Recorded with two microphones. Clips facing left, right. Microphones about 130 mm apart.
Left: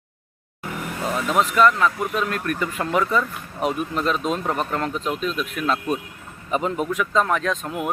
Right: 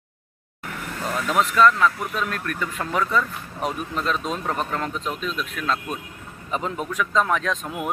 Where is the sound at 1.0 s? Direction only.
5° left (ahead or behind).